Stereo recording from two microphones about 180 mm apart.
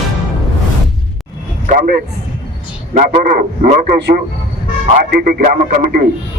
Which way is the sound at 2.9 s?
55° right (ahead or behind).